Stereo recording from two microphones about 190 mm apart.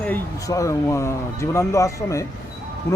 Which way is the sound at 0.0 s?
15° left (ahead or behind).